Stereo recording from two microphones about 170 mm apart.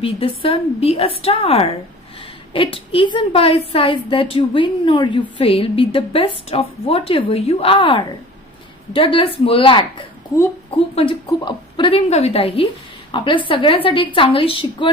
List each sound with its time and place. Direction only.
0.0 s a woman's voice: 30° left (ahead or behind)
11.2 s a woman's voice: 25° left (ahead or behind)